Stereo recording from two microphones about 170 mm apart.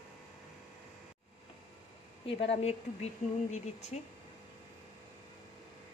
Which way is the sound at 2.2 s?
35° left (ahead or behind).